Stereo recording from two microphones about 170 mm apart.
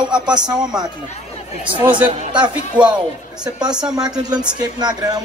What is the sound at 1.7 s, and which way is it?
Speech, 30° right (ahead or behind).